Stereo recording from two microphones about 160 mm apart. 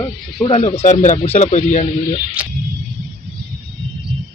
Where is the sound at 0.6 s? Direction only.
50° left (ahead or behind).